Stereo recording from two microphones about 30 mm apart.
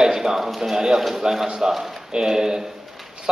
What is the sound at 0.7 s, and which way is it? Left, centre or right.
A man's voice, centre.